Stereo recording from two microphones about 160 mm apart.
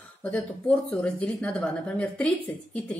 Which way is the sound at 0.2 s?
5° left (ahead or behind).